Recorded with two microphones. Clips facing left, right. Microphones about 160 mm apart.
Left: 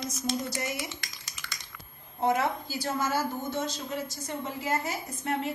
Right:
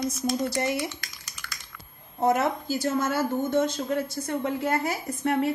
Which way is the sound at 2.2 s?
40° right (ahead or behind).